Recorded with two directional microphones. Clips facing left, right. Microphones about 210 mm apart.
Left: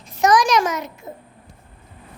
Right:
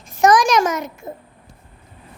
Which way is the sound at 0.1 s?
50° right (ahead or behind).